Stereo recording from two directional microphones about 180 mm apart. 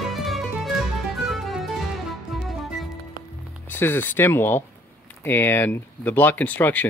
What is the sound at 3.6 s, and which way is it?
Speech, 10° left (ahead or behind).